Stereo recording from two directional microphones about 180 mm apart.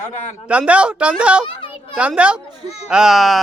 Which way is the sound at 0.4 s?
5° right (ahead or behind).